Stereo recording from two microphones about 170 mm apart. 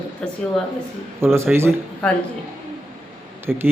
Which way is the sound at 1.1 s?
15° right (ahead or behind).